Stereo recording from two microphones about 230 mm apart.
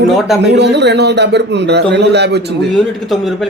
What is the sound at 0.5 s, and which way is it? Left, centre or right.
A man's voice, right.